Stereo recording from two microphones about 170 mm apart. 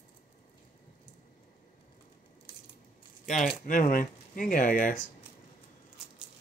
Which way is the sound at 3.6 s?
50° left (ahead or behind).